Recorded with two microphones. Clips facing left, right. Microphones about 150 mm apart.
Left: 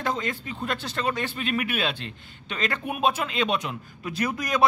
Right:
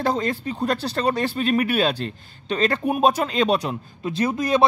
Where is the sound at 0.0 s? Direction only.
35° right (ahead or behind).